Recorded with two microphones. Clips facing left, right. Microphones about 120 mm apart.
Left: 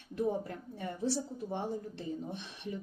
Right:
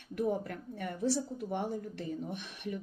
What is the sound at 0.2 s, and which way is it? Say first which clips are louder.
A woman's voice: even; 25° left (ahead or behind).